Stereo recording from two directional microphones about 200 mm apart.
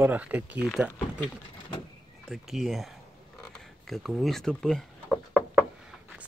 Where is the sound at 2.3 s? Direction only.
Centre (ahead or behind).